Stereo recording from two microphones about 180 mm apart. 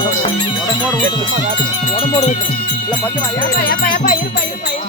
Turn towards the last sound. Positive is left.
turn(degrees=55)  # may be behind; listen again after turning